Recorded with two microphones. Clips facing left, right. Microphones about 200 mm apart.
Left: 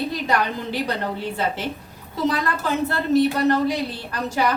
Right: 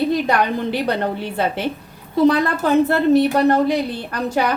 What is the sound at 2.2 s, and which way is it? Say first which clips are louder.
Speech: right 7 dB; 60° right (ahead or behind).